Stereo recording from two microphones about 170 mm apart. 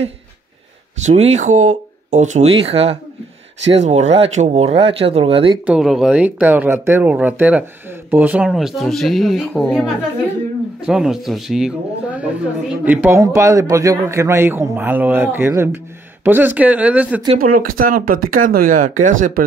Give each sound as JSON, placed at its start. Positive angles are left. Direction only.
{"t": 1.0, "sound": "speech", "side_deg": -40}
{"t": 5.7, "sound": "a man's voice", "side_deg": 0}
{"t": 17.5, "sound": "speech", "side_deg": -55}